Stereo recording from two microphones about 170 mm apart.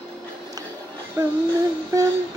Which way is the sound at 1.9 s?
20° right (ahead or behind).